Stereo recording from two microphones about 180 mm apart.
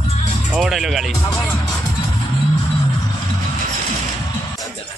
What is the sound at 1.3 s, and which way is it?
Speech, 15° left (ahead or behind).